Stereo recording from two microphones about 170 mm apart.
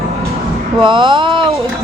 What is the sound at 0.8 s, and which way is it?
Speech, 30° right (ahead or behind).